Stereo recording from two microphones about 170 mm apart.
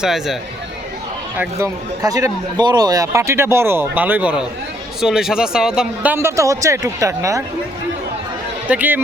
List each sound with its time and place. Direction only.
0.0 s speech: centre (ahead or behind)
1.4 s speech: 15° right (ahead or behind)
8.6 s speech: 10° right (ahead or behind)